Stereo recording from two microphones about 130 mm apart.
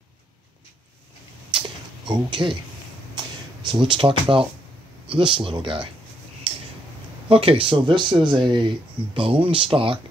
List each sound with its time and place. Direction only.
2.0 s speech: 35° right (ahead or behind)
3.6 s speech: 40° right (ahead or behind)
6.5 s a sound: 40° right (ahead or behind)
7.2 s speech: 45° right (ahead or behind)